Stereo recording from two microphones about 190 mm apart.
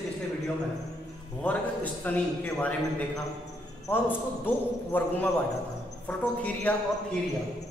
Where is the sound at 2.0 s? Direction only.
10° left (ahead or behind).